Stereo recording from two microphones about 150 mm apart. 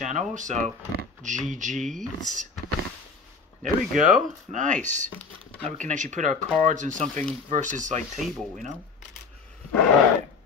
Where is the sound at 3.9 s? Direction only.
60° right (ahead or behind).